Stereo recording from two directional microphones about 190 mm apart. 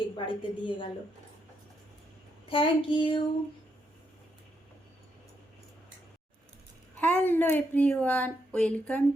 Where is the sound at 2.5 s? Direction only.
25° left (ahead or behind).